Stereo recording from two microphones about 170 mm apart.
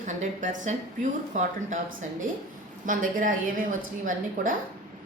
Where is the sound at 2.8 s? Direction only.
50° right (ahead or behind).